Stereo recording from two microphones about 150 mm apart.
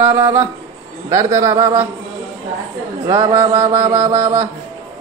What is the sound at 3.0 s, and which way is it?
Speech, 30° right (ahead or behind).